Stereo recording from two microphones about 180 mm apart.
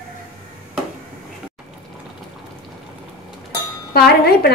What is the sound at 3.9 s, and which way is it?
Speech, 60° left (ahead or behind).